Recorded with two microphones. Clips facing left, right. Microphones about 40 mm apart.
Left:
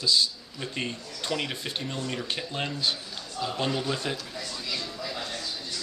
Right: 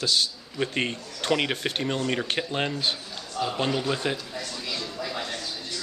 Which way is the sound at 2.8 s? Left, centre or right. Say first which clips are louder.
Right 1 dB; right.